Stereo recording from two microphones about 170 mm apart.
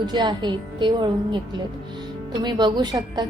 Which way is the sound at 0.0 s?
25° right (ahead or behind).